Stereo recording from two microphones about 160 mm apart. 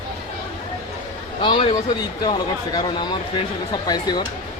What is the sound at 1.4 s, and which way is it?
Speech, 35° left (ahead or behind).